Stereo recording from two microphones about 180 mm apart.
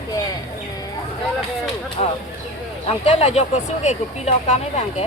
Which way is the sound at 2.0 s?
35° left (ahead or behind).